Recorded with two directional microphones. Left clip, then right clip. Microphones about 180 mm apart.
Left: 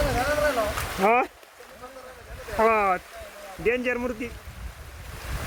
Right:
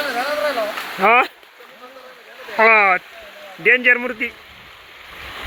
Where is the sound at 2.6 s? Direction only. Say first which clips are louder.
Right 9 dB; centre (ahead or behind).